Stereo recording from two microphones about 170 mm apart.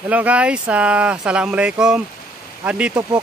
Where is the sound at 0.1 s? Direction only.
10° right (ahead or behind).